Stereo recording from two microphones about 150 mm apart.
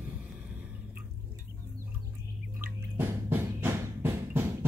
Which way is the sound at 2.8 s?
15° right (ahead or behind).